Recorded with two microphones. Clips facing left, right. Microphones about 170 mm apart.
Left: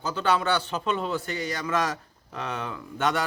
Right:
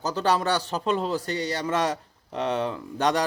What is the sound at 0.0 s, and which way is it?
A man's voice, 40° right (ahead or behind).